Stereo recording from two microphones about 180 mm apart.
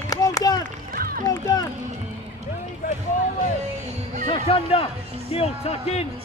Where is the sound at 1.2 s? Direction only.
20° left (ahead or behind).